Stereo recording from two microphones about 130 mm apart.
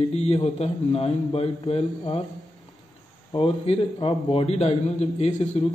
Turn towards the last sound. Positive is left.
turn(degrees=60)  # may be behind; listen again after turning